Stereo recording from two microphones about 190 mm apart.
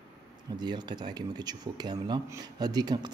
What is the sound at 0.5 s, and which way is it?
Speech, 20° right (ahead or behind).